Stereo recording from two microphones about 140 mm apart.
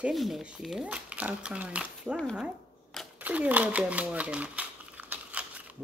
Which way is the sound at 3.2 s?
10° right (ahead or behind).